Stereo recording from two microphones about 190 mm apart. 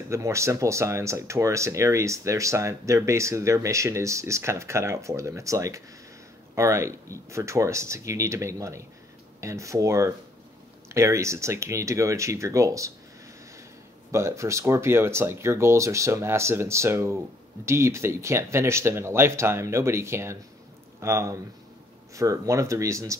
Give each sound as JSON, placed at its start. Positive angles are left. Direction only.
{"t": 0.1, "sound": "speech", "side_deg": -15}
{"t": 14.1, "sound": "speech", "side_deg": -15}